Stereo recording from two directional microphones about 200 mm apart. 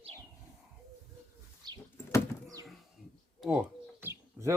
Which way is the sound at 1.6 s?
20° right (ahead or behind).